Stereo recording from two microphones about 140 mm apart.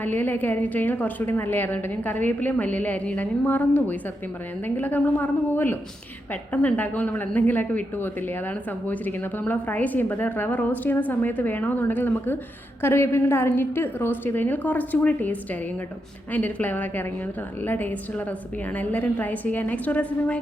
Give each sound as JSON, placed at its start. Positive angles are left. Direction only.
{"t": 0.0, "sound": "a woman's voice", "side_deg": 15}